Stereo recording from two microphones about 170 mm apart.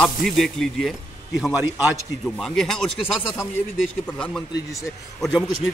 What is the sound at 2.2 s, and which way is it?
Speech, centre (ahead or behind).